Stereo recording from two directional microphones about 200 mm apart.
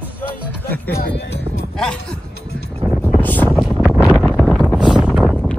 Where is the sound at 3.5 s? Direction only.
5° right (ahead or behind).